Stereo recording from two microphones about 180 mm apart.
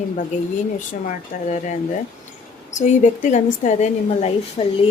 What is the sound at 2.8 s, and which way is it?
A woman's voice, 45° left (ahead or behind).